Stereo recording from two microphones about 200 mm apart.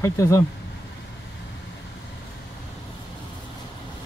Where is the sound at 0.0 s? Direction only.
15° left (ahead or behind).